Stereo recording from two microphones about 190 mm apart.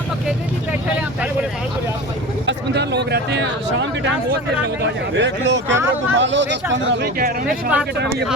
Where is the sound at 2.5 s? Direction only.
65° right (ahead or behind).